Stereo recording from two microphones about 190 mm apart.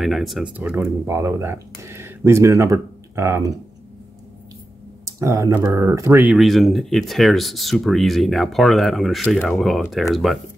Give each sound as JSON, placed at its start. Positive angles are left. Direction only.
{"t": 0.0, "sound": "speech", "side_deg": 0}
{"t": 5.0, "sound": "speech", "side_deg": -15}
{"t": 6.3, "sound": "speech", "side_deg": 0}